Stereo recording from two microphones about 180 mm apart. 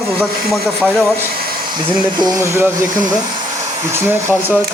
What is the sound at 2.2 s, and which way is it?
Speech, 20° right (ahead or behind).